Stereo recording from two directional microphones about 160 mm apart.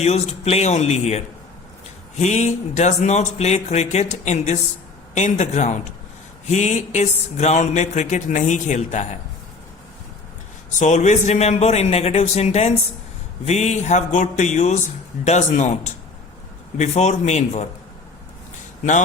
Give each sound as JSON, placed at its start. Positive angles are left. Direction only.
{"t": 0.0, "sound": "speech", "side_deg": 40}
{"t": 10.8, "sound": "speech", "side_deg": 45}